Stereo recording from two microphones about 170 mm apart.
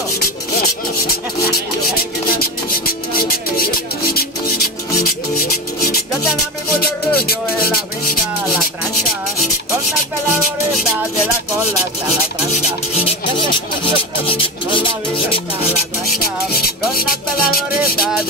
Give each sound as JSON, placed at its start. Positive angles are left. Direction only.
{"t": 1.0, "sound": "music", "side_deg": 65}
{"t": 4.9, "sound": "rub", "side_deg": 55}
{"t": 6.8, "sound": "music", "side_deg": 65}
{"t": 14.2, "sound": "rub", "side_deg": 30}
{"t": 16.2, "sound": "music", "side_deg": 60}